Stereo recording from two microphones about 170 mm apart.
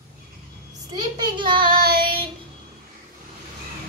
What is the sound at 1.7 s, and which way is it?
Child singing, 60° right (ahead or behind).